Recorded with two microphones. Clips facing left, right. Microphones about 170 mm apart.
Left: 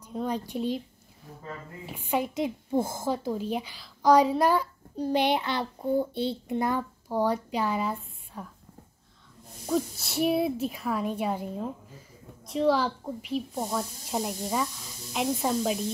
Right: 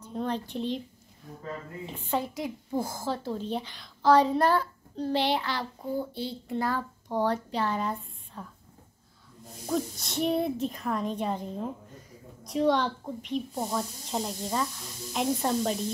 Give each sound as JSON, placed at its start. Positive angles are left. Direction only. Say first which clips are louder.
{"t": 0.0, "sound": "a woman's voice", "louder": "left 1 dB", "side_deg": 10}
{"t": 1.9, "sound": "a woman's voice", "louder": "left 2 dB", "side_deg": 10}
{"t": 9.7, "sound": "a woman's voice", "louder": "left 2 dB", "side_deg": 5}